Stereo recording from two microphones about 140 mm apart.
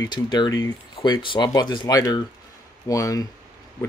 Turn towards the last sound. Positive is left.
turn(degrees=25)  # may be behind; listen again after turning